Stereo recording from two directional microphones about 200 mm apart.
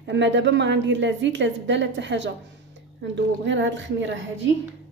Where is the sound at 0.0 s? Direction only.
65° right (ahead or behind).